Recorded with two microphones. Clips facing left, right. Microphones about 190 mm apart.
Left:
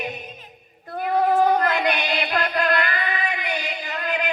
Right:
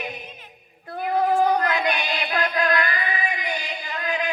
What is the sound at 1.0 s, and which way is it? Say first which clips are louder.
Female singing: left 1 dB; 50° left (ahead or behind).